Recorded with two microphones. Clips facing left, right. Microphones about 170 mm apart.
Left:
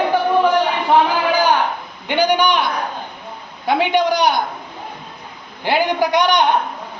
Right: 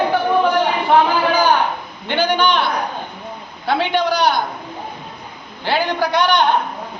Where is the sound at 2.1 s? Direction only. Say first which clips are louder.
Left 1 dB; 15° left (ahead or behind).